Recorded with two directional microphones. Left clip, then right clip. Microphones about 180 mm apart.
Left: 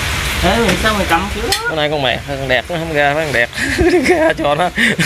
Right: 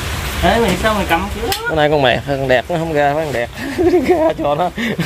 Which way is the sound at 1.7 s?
45° right (ahead or behind).